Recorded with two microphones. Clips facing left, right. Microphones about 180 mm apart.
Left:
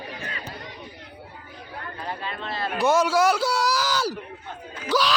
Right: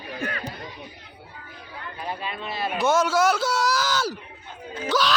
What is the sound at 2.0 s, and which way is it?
Speech, 15° right (ahead or behind).